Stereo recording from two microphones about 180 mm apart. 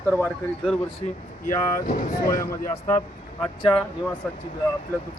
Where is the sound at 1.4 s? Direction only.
45° left (ahead or behind).